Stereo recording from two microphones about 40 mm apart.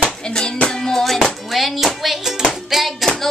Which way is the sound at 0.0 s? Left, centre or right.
Centre.